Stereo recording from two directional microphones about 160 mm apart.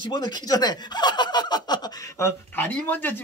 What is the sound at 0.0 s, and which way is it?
Speech, 25° left (ahead or behind).